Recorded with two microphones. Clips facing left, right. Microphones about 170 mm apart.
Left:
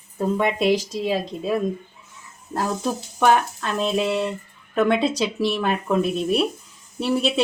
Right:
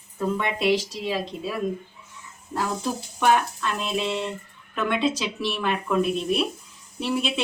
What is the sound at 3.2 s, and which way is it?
Speech, 45° left (ahead or behind).